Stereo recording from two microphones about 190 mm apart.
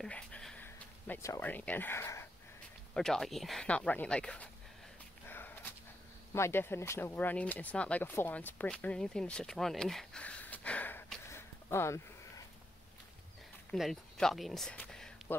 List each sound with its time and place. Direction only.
0.0 s speech: 5° left (ahead or behind)
2.9 s speech: centre (ahead or behind)
5.2 s sniff: 10° left (ahead or behind)
6.3 s speech: 15° left (ahead or behind)
13.7 s speech: centre (ahead or behind)